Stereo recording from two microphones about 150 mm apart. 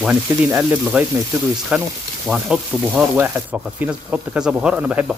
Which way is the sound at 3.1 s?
15° right (ahead or behind).